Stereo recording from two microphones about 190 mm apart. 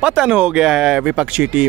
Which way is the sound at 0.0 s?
5° right (ahead or behind).